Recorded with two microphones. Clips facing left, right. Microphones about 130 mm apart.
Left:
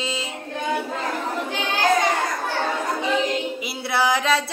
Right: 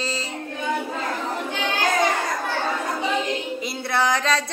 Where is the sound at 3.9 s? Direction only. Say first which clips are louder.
Left 1 dB; 5° left (ahead or behind).